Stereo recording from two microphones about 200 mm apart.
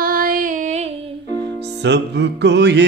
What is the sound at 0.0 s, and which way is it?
Music, 45° right (ahead or behind).